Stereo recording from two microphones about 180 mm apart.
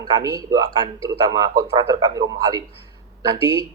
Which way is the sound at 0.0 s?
20° right (ahead or behind).